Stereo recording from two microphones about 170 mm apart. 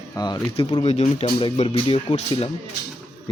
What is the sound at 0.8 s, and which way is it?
Speech, 40° left (ahead or behind).